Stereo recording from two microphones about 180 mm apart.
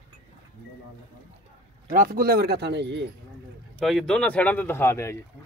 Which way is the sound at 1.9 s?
55° right (ahead or behind).